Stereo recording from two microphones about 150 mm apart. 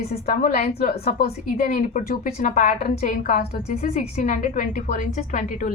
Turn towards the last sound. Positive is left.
turn(degrees=55)  # may be behind; listen again after turning